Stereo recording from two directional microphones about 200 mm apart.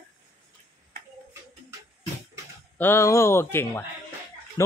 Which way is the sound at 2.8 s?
15° left (ahead or behind).